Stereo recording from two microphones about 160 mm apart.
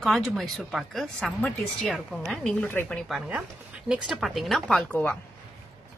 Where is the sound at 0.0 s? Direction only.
Centre (ahead or behind).